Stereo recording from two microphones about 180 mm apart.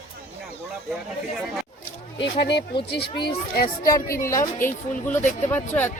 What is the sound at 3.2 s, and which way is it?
A woman's voice, 55° left (ahead or behind).